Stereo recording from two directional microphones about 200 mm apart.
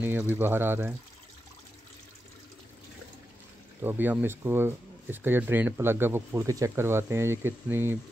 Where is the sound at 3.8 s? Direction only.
10° right (ahead or behind).